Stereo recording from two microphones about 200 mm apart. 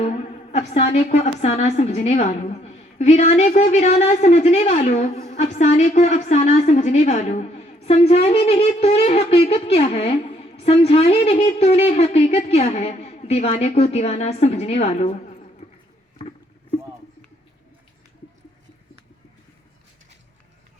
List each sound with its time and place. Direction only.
0.0 s a woman's voice: 30° left (ahead or behind)